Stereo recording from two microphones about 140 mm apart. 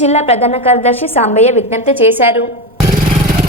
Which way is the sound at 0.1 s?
50° left (ahead or behind).